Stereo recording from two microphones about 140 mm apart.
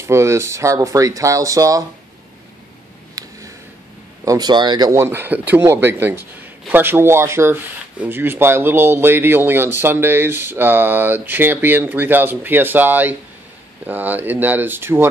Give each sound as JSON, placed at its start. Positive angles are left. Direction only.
{"t": 0.0, "sound": "speech", "side_deg": -20}
{"t": 3.2, "sound": "a sound", "side_deg": -25}
{"t": 4.2, "sound": "speech", "side_deg": -25}